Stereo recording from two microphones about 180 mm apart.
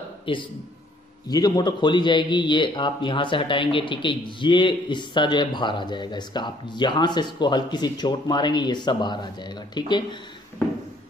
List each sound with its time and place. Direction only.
0.3 s a man's voice: 30° left (ahead or behind)